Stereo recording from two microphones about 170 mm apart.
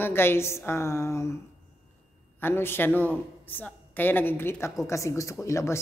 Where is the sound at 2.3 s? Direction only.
15° left (ahead or behind).